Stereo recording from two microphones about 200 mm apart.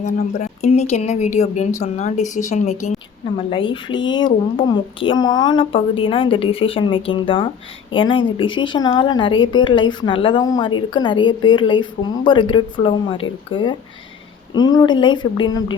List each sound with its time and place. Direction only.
0.0 s a woman's voice: 35° left (ahead or behind)